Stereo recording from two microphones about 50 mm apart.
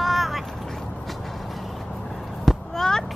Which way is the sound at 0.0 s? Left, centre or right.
Centre.